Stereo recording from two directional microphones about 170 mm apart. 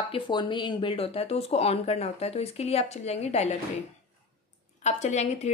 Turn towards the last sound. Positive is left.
turn(degrees=40)  # may be behind; listen again after turning